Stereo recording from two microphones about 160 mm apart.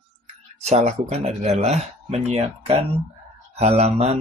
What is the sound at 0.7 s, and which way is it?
Speech, 45° right (ahead or behind).